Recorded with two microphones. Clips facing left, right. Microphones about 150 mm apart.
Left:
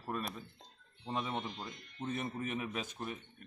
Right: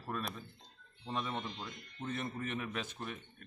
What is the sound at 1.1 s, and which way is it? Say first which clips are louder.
Speech: left 1 dB; 25° left (ahead or behind).